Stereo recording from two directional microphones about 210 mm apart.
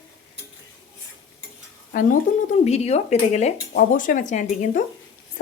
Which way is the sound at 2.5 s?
30° left (ahead or behind).